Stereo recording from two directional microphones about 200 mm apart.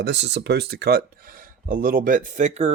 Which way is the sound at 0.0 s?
60° right (ahead or behind).